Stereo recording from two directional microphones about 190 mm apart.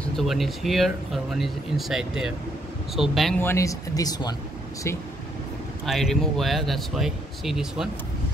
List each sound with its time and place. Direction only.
0.0 s speech: centre (ahead or behind)
3.3 s speech: 15° left (ahead or behind)
5.9 s speech: centre (ahead or behind)